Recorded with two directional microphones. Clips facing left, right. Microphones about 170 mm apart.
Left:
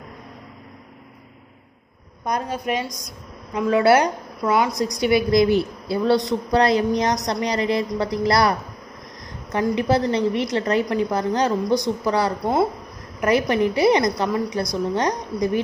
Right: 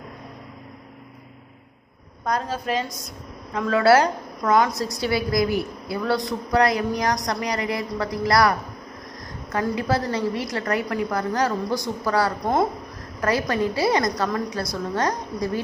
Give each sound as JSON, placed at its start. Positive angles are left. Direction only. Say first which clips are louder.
{"t": 2.2, "sound": "a woman's voice", "louder": "left 1 dB", "side_deg": 15}